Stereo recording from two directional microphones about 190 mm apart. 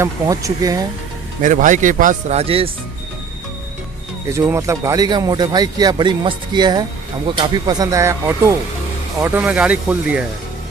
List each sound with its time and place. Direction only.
0.0 s speech: 15° right (ahead or behind)
1.4 s speech: 45° right (ahead or behind)
4.3 s speech: 15° right (ahead or behind)